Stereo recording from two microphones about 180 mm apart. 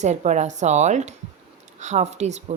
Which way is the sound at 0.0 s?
40° right (ahead or behind).